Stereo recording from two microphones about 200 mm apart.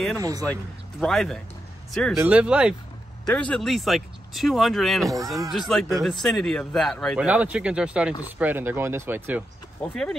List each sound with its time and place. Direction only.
0.2 s speech: 15° right (ahead or behind)
0.5 s a man's voice: centre (ahead or behind)
2.1 s speech: 10° right (ahead or behind)
3.3 s a man's voice: 5° left (ahead or behind); by 9.4 s 10° right (ahead or behind)
9.8 s a man's voice: 5° left (ahead or behind)